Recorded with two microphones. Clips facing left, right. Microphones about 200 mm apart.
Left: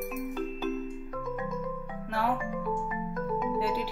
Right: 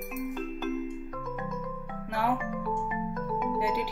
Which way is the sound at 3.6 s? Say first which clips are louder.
Right 2 dB; 15° right (ahead or behind).